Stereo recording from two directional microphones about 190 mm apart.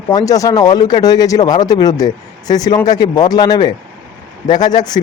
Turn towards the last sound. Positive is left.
turn(degrees=20)  # may be behind; listen again after turning